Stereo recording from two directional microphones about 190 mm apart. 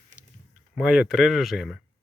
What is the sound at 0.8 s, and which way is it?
Speech, centre (ahead or behind).